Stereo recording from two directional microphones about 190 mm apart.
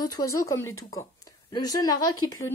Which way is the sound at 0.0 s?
20° left (ahead or behind).